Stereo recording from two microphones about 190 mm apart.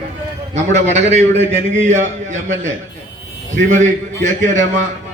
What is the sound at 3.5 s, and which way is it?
Speech, 40° right (ahead or behind).